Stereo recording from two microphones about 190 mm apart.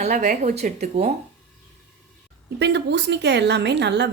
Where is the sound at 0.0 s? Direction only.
40° right (ahead or behind).